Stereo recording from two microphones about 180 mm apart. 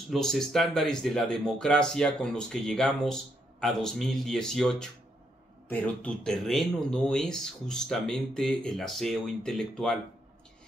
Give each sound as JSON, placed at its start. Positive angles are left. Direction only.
{"t": 0.1, "sound": "speech", "side_deg": 0}